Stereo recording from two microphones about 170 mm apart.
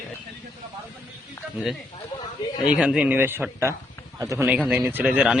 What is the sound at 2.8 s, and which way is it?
Speech, 5° right (ahead or behind).